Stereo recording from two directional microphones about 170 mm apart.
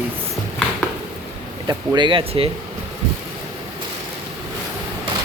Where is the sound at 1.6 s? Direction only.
25° right (ahead or behind).